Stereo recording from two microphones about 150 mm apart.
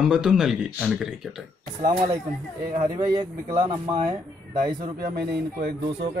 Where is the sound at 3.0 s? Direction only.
30° right (ahead or behind).